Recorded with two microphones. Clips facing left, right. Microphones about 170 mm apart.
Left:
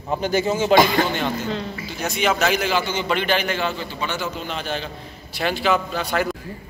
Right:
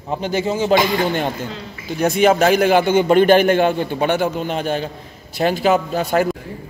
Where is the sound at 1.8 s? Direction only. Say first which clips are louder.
Right 9 dB; 55° right (ahead or behind).